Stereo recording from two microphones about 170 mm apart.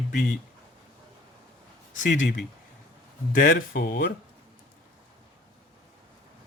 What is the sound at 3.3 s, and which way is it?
Speech, 65° left (ahead or behind).